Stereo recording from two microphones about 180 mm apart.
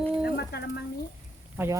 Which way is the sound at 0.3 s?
65° left (ahead or behind).